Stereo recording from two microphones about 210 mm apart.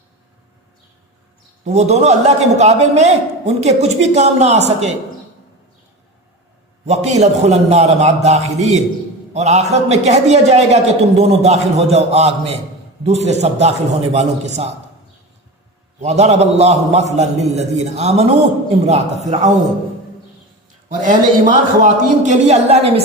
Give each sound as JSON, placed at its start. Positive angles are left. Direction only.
{"t": 1.6, "sound": "a man's voice", "side_deg": -30}
{"t": 6.8, "sound": "a man's voice", "side_deg": -30}
{"t": 16.0, "sound": "a man's voice", "side_deg": -30}
{"t": 21.0, "sound": "a man's voice", "side_deg": -40}